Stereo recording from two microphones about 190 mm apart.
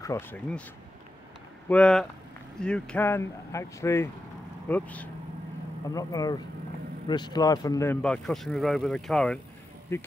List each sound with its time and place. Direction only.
0.0 s speech: 15° left (ahead or behind)
1.7 s speech: 5° left (ahead or behind)
5.9 s speech: 20° left (ahead or behind)
8.0 s speech: 5° left (ahead or behind)